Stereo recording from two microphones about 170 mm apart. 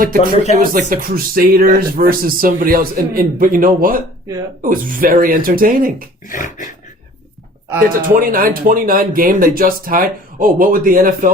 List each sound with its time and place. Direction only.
0.5 s speech: 55° right (ahead or behind)
6.2 s dog: 50° left (ahead or behind)
7.9 s speech: 55° right (ahead or behind)